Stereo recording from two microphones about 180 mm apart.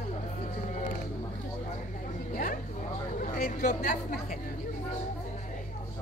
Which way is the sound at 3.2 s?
45° left (ahead or behind).